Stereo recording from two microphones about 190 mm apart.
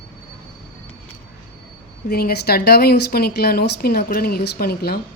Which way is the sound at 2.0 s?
55° left (ahead or behind).